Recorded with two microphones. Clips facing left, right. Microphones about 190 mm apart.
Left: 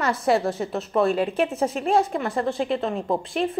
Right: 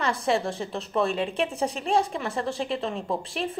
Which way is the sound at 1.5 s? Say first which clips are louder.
Left 3 dB; centre (ahead or behind).